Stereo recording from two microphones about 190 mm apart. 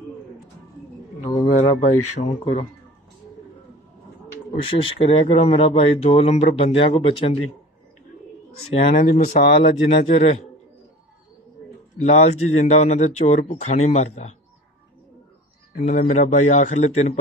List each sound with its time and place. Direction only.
1.2 s speech: 30° left (ahead or behind)
4.5 s speech: 30° left (ahead or behind)
8.7 s speech: 35° left (ahead or behind)
12.0 s speech: 35° left (ahead or behind)
15.8 s speech: 35° left (ahead or behind)